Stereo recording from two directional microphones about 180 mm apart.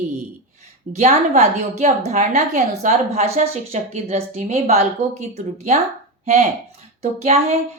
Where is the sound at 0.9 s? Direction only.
40° right (ahead or behind).